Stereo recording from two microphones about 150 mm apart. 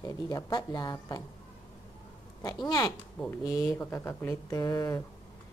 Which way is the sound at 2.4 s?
25° left (ahead or behind).